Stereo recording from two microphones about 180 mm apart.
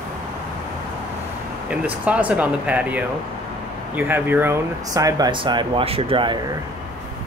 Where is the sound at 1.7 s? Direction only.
5° right (ahead or behind); by 6.4 s 25° right (ahead or behind).